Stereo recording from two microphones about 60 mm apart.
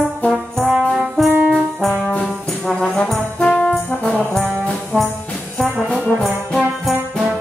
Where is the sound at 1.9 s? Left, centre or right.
Left.